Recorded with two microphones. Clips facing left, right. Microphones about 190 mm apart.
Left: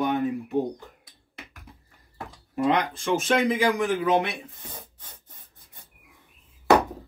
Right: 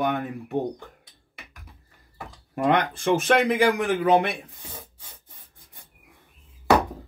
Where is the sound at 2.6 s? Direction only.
60° right (ahead or behind).